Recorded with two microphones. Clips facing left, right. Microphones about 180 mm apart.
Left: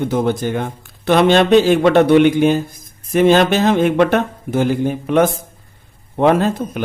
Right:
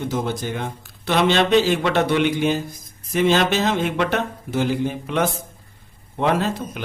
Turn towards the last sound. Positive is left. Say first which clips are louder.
# left 6 dB
turn(degrees=50)  # may be behind; listen again after turning